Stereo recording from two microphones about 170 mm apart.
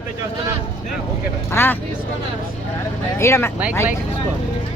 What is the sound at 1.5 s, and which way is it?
Speech, 15° left (ahead or behind).